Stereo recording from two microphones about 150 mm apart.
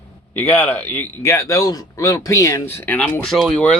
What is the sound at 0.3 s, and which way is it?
Speech, 15° left (ahead or behind).